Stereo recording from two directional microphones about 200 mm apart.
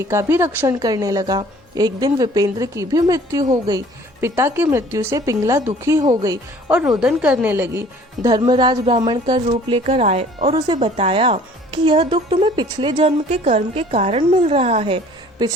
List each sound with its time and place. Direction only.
0.0 s a woman's voice: 15° right (ahead or behind)
6.7 s speech: 5° right (ahead or behind); by 15.5 s 25° right (ahead or behind)